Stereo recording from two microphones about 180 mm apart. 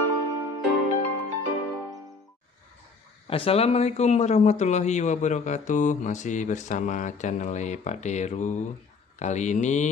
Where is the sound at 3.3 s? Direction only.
30° left (ahead or behind).